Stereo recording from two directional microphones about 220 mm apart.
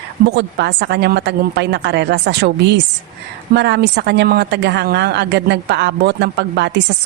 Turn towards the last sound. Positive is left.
turn(degrees=-50)  # may be behind; listen again after turning